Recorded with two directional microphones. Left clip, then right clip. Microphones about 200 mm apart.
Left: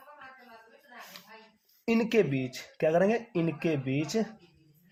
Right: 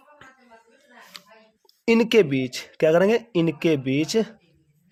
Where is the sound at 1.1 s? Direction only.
40° right (ahead or behind).